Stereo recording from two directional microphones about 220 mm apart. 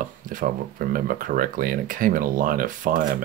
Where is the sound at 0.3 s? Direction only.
40° right (ahead or behind).